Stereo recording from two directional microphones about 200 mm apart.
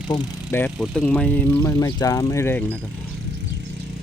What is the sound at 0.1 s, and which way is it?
Speech, 20° left (ahead or behind).